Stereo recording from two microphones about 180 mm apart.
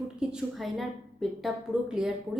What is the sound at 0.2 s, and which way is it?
A woman's voice, 5° right (ahead or behind).